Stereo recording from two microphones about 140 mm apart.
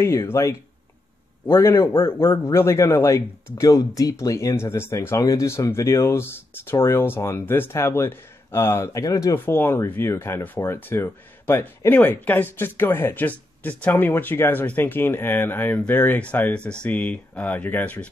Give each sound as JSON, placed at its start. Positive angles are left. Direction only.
{"t": 0.0, "sound": "speech", "side_deg": 20}